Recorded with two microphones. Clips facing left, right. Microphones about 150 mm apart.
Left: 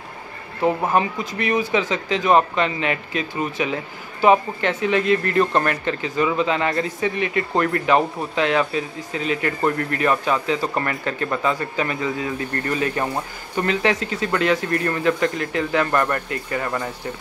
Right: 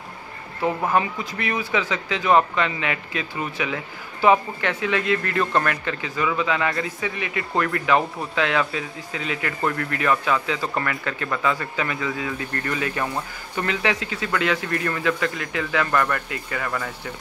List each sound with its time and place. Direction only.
0.6 s speech: 20° left (ahead or behind); by 7.4 s 35° left (ahead or behind)
7.8 s speech: 25° left (ahead or behind)